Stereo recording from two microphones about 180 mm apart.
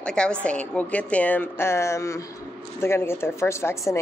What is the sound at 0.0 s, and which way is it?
A woman's voice, 5° left (ahead or behind).